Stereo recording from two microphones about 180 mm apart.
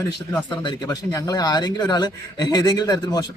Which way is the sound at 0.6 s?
20° left (ahead or behind).